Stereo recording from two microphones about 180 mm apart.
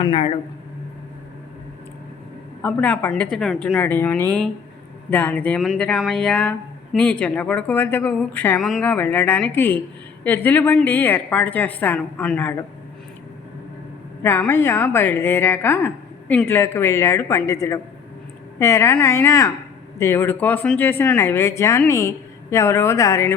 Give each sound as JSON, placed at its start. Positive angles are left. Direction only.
{"t": 0.0, "sound": "speech", "side_deg": 30}
{"t": 2.6, "sound": "speech", "side_deg": 10}
{"t": 14.2, "sound": "speech", "side_deg": 10}